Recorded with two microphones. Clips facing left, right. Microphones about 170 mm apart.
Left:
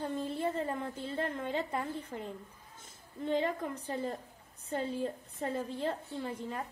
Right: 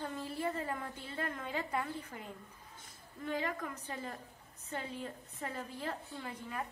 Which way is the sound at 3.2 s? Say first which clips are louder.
Left 6 dB; 25° left (ahead or behind).